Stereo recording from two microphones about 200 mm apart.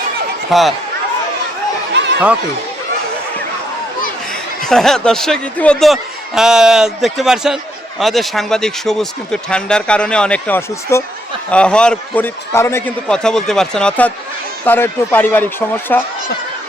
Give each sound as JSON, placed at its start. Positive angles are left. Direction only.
{"t": 0.5, "sound": "speech", "side_deg": 0}
{"t": 1.9, "sound": "a sound", "side_deg": -60}
{"t": 4.3, "sound": "speech", "side_deg": 0}